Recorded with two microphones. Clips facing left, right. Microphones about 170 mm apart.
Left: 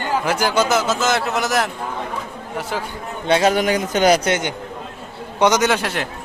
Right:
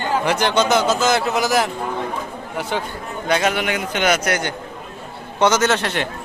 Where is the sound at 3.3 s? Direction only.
35° left (ahead or behind).